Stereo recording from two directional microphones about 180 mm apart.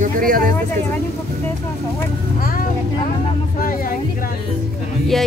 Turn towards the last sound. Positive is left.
turn(degrees=0)  # may be behind; listen again after turning